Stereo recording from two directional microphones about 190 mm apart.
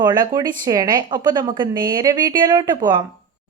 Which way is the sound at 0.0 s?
20° right (ahead or behind).